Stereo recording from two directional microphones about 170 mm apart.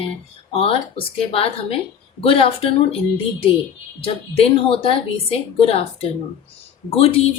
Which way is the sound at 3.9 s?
35° left (ahead or behind).